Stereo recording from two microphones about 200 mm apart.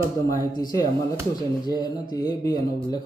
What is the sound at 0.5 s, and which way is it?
Speech, 20° left (ahead or behind).